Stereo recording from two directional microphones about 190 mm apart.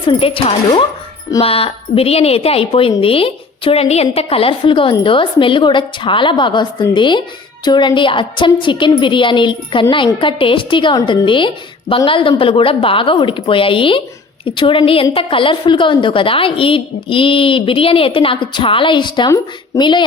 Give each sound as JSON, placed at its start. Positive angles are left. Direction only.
{"t": 0.1, "sound": "a woman's voice", "side_deg": 30}